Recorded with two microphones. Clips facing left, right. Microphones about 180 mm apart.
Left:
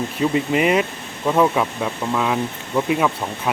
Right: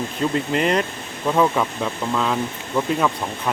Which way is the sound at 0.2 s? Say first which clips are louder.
Left 3 dB; 5° left (ahead or behind).